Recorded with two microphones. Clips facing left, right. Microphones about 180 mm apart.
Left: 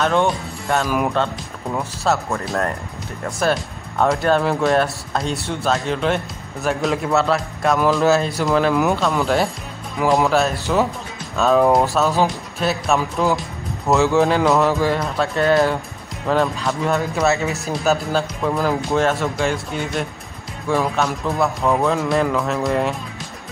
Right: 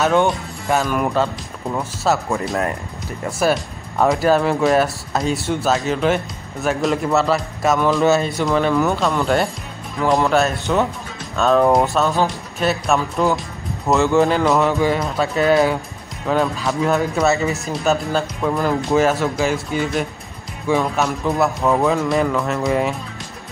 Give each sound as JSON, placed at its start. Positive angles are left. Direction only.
{"t": 0.0, "sound": "speech", "side_deg": 0}